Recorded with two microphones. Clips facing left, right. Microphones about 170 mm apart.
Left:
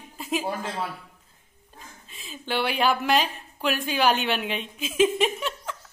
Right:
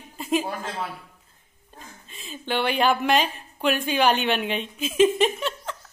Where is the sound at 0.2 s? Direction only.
Centre (ahead or behind).